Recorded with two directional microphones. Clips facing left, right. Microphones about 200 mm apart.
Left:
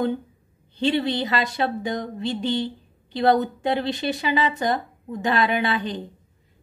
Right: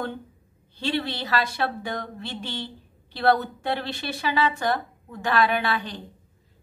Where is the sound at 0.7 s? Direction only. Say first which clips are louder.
Left 6 dB; 20° left (ahead or behind).